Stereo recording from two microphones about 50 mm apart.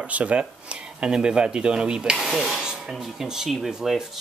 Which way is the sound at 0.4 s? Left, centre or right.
Centre.